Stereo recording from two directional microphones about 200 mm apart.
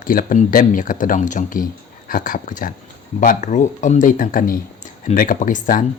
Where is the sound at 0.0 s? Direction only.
45° left (ahead or behind).